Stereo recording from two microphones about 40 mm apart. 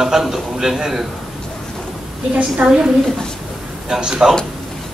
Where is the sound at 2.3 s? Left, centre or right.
Right.